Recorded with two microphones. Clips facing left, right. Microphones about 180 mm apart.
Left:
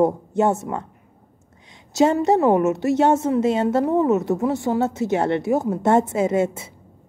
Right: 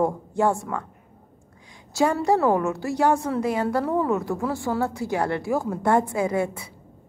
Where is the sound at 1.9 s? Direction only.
20° left (ahead or behind).